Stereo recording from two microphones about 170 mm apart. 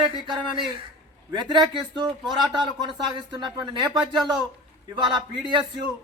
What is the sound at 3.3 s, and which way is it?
Speech, 25° right (ahead or behind).